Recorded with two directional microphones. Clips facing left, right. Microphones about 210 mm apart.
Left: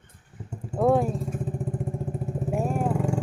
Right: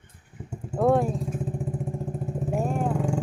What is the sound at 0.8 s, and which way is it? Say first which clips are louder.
Vehicle: even; centre (ahead or behind).